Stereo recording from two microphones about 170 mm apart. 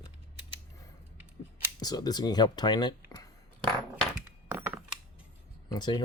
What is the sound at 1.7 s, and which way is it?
Speech, 25° left (ahead or behind).